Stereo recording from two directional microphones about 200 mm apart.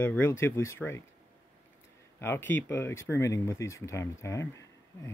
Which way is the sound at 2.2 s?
10° left (ahead or behind).